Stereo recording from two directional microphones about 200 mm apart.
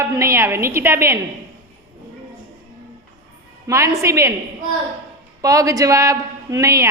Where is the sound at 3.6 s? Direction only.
15° right (ahead or behind).